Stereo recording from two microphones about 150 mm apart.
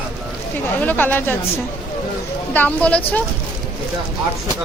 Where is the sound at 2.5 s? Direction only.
10° left (ahead or behind).